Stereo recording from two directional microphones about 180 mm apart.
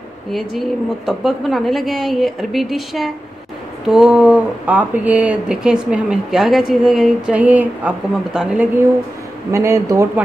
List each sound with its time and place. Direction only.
0.3 s speech: centre (ahead or behind); by 10.2 s 15° right (ahead or behind)